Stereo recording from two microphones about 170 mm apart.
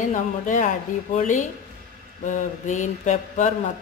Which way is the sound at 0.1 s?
50° left (ahead or behind).